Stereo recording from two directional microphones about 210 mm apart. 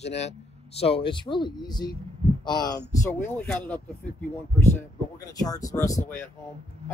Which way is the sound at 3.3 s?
5° left (ahead or behind).